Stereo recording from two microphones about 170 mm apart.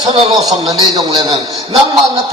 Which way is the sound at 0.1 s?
30° right (ahead or behind).